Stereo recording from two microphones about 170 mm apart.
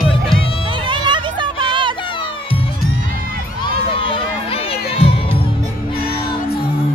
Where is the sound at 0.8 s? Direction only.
25° right (ahead or behind).